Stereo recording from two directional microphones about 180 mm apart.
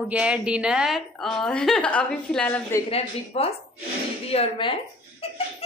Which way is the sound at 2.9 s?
35° left (ahead or behind).